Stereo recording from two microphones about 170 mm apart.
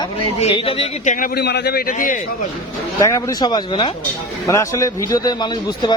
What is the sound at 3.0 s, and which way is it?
Speech, 20° left (ahead or behind).